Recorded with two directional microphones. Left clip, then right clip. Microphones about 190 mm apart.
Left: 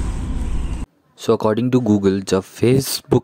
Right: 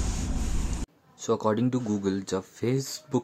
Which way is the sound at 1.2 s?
40° left (ahead or behind).